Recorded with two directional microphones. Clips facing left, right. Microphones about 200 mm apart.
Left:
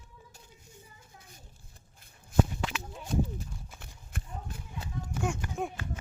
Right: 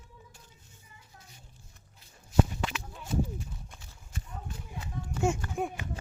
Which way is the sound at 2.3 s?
50° left (ahead or behind).